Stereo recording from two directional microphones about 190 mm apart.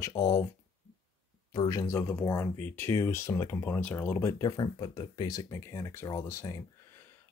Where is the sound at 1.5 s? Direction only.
15° left (ahead or behind).